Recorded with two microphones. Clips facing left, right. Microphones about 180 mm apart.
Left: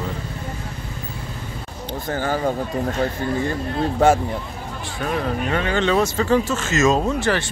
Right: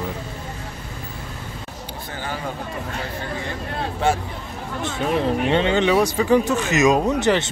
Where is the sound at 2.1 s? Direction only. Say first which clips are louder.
Left 8 dB; 45° left (ahead or behind).